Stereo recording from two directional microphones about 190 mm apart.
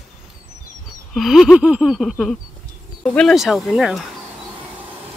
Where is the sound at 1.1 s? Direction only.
Centre (ahead or behind).